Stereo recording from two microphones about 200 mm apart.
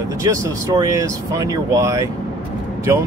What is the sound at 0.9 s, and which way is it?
Speech, 15° right (ahead or behind).